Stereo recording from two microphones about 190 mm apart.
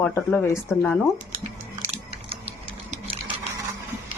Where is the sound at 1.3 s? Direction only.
40° right (ahead or behind).